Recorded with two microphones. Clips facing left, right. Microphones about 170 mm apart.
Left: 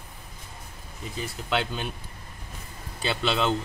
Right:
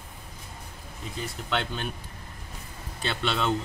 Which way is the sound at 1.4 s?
5° left (ahead or behind).